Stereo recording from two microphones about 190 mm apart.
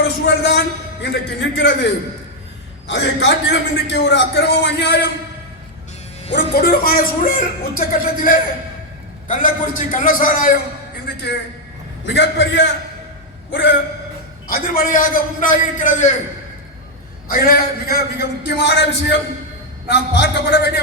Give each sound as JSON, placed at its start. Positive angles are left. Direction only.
{"t": 0.0, "sound": "a man's voice", "side_deg": 65}
{"t": 6.3, "sound": "a man's voice", "side_deg": 55}
{"t": 12.0, "sound": "a man's voice", "side_deg": 70}
{"t": 14.4, "sound": "a man's voice", "side_deg": 50}
{"t": 17.4, "sound": "a man's voice", "side_deg": 55}